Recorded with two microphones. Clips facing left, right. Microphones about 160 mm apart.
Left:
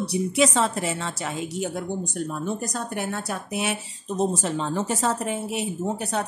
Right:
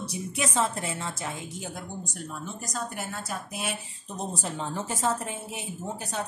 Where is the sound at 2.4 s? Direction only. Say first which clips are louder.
Left 6 dB; 60° left (ahead or behind).